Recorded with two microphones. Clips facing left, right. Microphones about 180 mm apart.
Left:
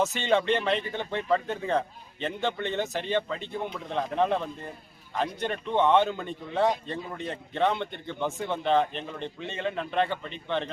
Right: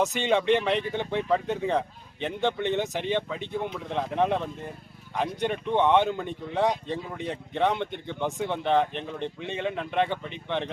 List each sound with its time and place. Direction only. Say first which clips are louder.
0.0 s speech: right 1 dB; 15° right (ahead or behind)